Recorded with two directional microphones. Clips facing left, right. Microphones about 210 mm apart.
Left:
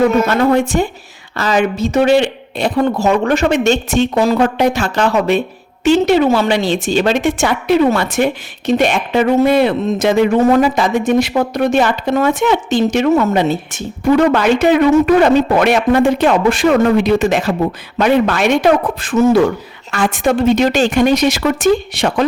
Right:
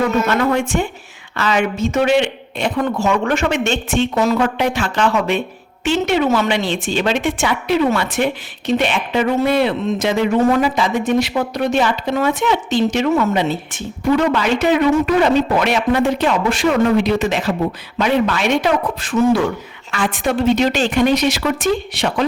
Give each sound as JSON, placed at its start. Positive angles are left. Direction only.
{"t": 0.3, "sound": "speech", "side_deg": 35}